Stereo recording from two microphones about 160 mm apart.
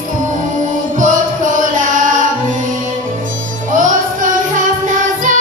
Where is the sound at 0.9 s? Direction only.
55° right (ahead or behind).